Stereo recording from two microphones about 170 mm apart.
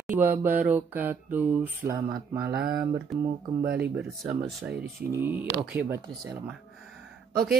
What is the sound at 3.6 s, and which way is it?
Speech, 70° right (ahead or behind).